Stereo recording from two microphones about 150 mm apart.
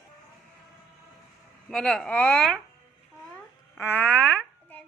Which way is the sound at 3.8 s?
10° left (ahead or behind).